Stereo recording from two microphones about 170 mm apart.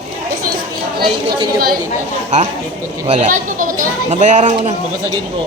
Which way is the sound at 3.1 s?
45° right (ahead or behind).